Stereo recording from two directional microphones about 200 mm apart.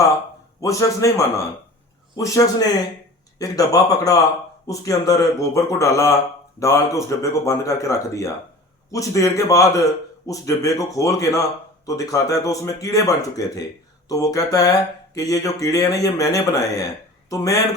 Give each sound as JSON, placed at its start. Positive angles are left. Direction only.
{"t": 0.6, "sound": "speech", "side_deg": 15}